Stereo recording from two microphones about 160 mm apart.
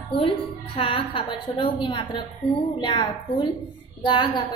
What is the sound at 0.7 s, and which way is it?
A woman's voice, 35° left (ahead or behind).